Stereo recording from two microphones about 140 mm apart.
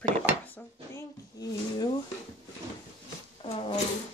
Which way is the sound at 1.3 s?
25° left (ahead or behind).